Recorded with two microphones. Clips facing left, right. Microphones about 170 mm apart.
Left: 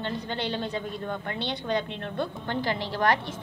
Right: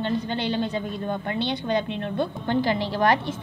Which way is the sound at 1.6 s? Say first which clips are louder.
Right 4 dB; 15° right (ahead or behind).